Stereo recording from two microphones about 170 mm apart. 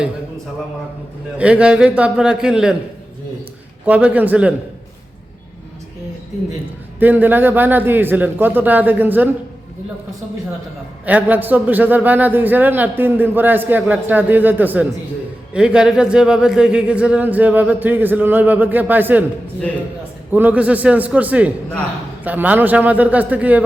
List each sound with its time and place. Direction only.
1.4 s a man's voice: 5° right (ahead or behind)
3.8 s a man's voice: 10° right (ahead or behind)
7.0 s a man's voice: 10° right (ahead or behind)
11.0 s a man's voice: 10° right (ahead or behind)
20.3 s a man's voice: 10° right (ahead or behind)